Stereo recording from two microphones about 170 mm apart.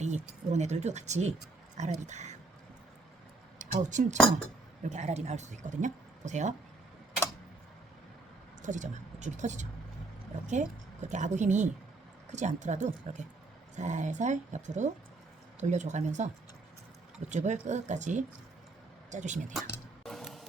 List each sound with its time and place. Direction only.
0.0 s speech: 45° right (ahead or behind)
3.6 s speech: 50° right (ahead or behind)
8.6 s speech: 45° right (ahead or behind)
20.1 s music: centre (ahead or behind)